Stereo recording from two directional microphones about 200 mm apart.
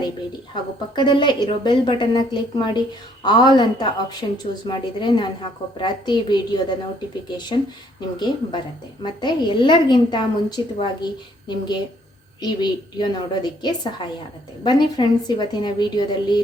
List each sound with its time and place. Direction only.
0.5 s a woman's voice: 20° left (ahead or behind)
9.0 s a woman's voice: 20° left (ahead or behind)